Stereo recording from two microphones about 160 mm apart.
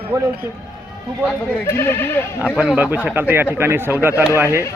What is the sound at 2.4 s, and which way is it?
A man's voice, 10° right (ahead or behind).